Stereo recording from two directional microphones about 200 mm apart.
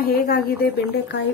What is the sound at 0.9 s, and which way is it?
Speech, 60° left (ahead or behind).